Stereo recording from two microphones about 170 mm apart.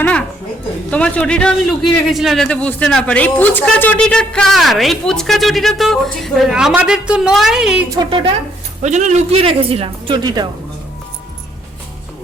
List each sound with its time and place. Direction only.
0.0 s a sound: 5° left (ahead or behind)
0.9 s speech: 5° left (ahead or behind)
7.9 s a woman's voice: 30° right (ahead or behind)
8.8 s speech: 45° right (ahead or behind); by 10.5 s 25° right (ahead or behind)